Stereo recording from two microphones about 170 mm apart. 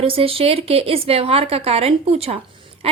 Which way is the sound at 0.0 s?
35° right (ahead or behind).